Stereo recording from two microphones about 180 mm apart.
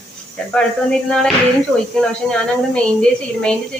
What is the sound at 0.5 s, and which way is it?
A woman's voice, 5° left (ahead or behind).